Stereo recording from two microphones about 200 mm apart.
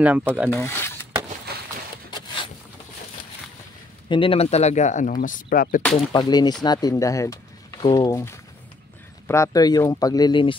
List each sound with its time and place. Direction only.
0.0 s speech: 5° right (ahead or behind)
0.5 s speech: 15° left (ahead or behind)
2.0 s a sound: 25° left (ahead or behind)
4.1 s speech: 25° left (ahead or behind); by 5.8 s 45° left (ahead or behind)
5.9 s speech: 20° left (ahead or behind)